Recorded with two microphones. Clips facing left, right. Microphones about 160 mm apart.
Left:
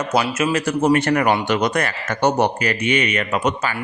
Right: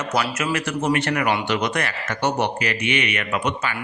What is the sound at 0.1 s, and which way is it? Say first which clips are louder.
A man's voice: left 4 dB; 25° left (ahead or behind).